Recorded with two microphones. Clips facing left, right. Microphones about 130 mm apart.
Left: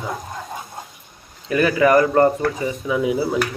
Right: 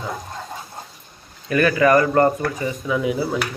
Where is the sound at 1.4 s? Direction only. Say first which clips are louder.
Even; 15° left (ahead or behind).